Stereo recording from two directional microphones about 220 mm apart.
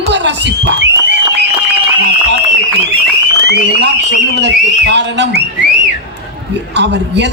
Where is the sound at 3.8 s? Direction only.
50° right (ahead or behind).